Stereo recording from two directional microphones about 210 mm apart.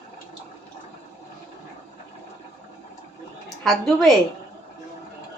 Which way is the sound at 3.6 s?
Centre (ahead or behind).